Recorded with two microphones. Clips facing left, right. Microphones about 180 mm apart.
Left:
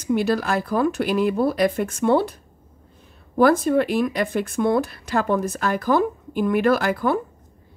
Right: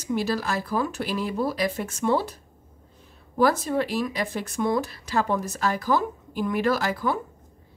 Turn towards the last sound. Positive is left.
turn(degrees=55)  # may be behind; listen again after turning